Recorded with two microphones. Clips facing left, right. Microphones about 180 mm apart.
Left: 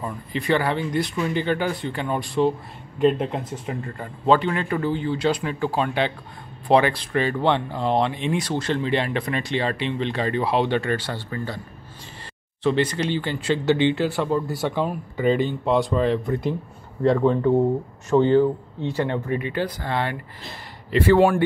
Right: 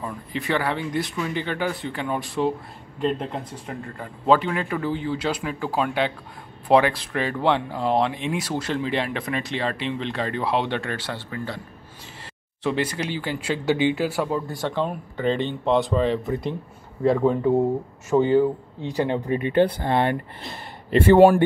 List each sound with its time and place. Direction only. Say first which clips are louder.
0.0 s speech: left 2 dB; centre (ahead or behind)
3.0 s speech: left 5 dB; 5° left (ahead or behind)
12.6 s speech: left 3 dB; 5° right (ahead or behind)
14.5 s speech: left 1 dB; 5° left (ahead or behind); by 20.0 s 20° right (ahead or behind)